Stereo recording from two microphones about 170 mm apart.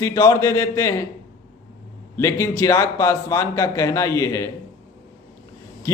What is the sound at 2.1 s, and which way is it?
A man's voice, 20° left (ahead or behind).